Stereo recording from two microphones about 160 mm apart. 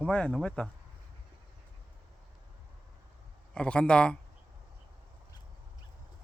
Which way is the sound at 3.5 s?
5° left (ahead or behind).